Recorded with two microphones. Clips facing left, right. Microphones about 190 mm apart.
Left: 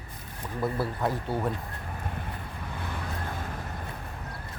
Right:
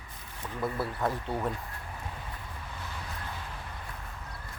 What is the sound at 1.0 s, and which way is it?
Speech, centre (ahead or behind).